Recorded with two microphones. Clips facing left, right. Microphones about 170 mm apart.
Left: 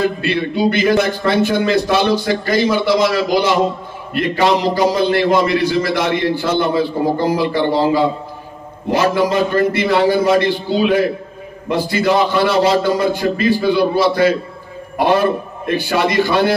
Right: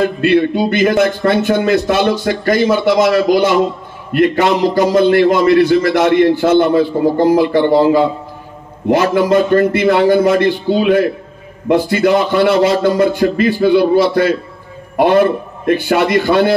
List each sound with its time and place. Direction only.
0.2 s a man's voice: 55° right (ahead or behind)